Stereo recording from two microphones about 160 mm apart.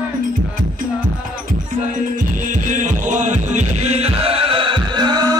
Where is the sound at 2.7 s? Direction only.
50° right (ahead or behind); by 5.4 s 25° right (ahead or behind).